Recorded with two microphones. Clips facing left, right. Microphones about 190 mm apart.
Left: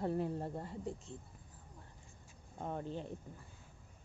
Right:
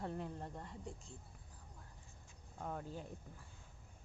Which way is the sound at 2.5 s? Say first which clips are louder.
Left 4 dB; 25° left (ahead or behind).